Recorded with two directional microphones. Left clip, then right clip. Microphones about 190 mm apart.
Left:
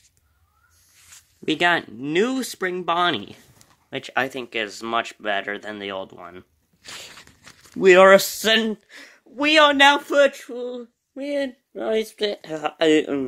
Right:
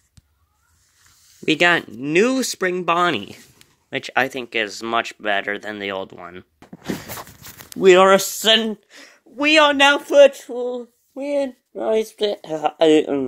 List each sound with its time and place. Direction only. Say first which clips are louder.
1.4 s speech: right 4 dB; 15° right (ahead or behind)
7.8 s speech: even; 5° right (ahead or behind)